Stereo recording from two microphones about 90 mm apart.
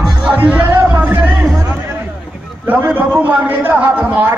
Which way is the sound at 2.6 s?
20° right (ahead or behind).